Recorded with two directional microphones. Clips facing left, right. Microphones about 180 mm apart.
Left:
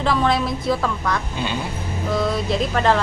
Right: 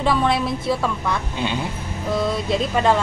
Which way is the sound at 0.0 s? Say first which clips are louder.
Even; centre (ahead or behind).